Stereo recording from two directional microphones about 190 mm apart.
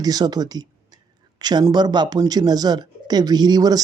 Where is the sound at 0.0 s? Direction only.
20° right (ahead or behind).